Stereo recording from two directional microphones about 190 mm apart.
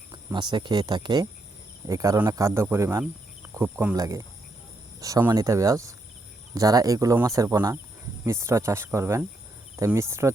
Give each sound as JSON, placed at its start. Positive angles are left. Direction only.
{"t": 0.1, "sound": "speech", "side_deg": -20}